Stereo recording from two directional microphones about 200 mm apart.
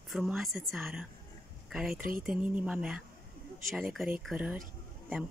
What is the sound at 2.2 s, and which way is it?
Speech, 5° right (ahead or behind).